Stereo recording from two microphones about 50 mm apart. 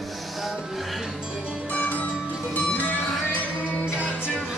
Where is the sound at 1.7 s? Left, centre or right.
Left.